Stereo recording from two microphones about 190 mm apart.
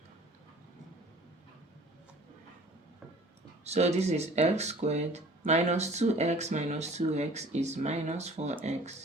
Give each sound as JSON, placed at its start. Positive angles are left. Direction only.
{"t": 3.6, "sound": "speech", "side_deg": -35}